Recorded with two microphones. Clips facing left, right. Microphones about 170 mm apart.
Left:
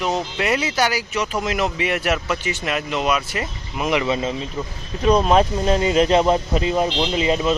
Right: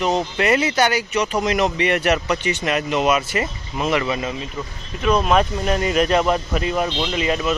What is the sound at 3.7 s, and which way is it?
Speech, 15° left (ahead or behind).